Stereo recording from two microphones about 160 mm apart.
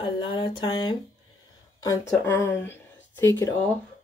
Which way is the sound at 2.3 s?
15° left (ahead or behind).